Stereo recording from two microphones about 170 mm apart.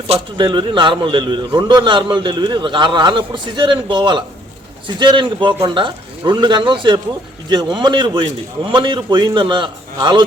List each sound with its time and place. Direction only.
0.1 s a man's voice: 30° right (ahead or behind)